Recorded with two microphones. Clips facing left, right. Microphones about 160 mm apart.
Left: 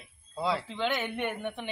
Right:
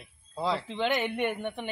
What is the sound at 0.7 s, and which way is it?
Speech, 15° right (ahead or behind).